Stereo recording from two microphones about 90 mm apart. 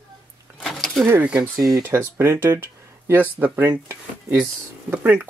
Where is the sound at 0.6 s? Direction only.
5° left (ahead or behind).